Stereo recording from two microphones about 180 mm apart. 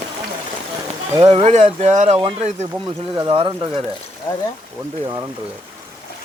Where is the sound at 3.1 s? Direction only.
25° right (ahead or behind).